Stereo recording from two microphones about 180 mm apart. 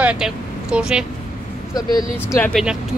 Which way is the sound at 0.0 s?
5° right (ahead or behind).